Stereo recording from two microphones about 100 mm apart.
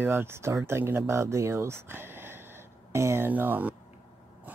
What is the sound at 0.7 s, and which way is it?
Speech, 25° right (ahead or behind).